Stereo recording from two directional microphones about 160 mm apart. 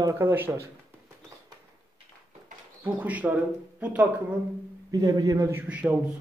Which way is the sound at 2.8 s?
10° right (ahead or behind).